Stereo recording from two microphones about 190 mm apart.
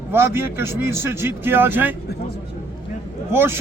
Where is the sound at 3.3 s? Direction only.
10° right (ahead or behind).